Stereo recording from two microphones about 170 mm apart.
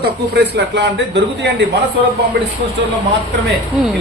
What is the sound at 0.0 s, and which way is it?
A man's voice, 75° right (ahead or behind).